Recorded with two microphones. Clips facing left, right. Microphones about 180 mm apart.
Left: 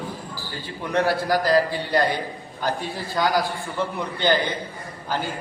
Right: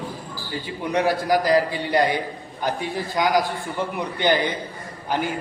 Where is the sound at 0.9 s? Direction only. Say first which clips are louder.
Right 1 dB; 15° right (ahead or behind).